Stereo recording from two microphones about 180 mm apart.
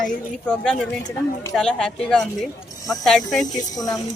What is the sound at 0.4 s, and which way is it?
Speech, 5° left (ahead or behind).